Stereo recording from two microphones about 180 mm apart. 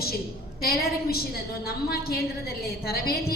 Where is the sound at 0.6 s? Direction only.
55° left (ahead or behind).